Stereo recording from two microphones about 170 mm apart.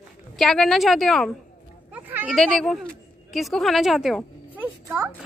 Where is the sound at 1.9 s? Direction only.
10° right (ahead or behind).